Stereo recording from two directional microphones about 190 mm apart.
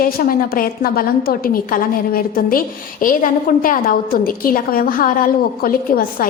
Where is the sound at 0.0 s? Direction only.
50° left (ahead or behind).